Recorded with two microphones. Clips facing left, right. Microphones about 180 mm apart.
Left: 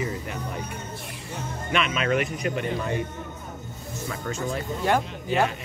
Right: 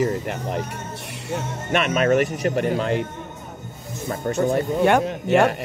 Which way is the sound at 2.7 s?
75° right (ahead or behind).